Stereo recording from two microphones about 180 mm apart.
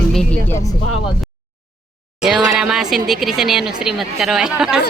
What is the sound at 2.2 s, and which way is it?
Speech, centre (ahead or behind).